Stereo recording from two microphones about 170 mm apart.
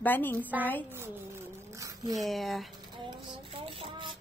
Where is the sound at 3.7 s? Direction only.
30° right (ahead or behind).